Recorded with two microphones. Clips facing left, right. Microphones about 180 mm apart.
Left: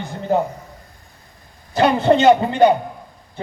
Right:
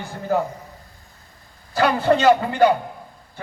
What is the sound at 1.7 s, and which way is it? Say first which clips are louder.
A man's voice: left 3 dB; 20° left (ahead or behind).